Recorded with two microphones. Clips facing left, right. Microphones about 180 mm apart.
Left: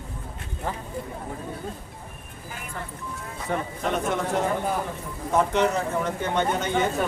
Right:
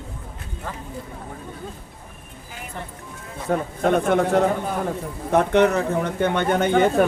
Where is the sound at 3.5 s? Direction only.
50° right (ahead or behind).